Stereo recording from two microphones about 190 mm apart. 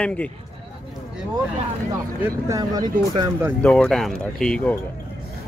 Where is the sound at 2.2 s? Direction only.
15° right (ahead or behind).